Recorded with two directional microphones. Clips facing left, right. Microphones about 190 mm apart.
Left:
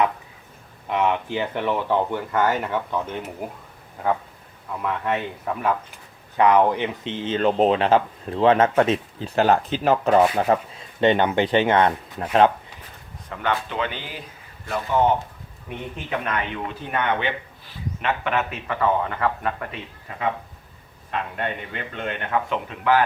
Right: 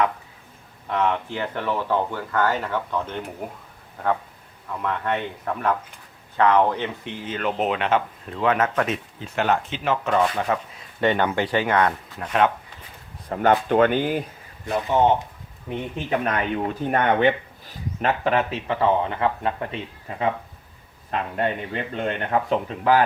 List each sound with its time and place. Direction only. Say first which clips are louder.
0.9 s speech: left 1 dB; 15° left (ahead or behind)
13.2 s speech: right 6 dB; 40° right (ahead or behind)
14.7 s speech: right 1 dB; 20° right (ahead or behind)
16.0 s speech: right 3 dB; 40° right (ahead or behind)
21.1 s speech: right 3 dB; 35° right (ahead or behind)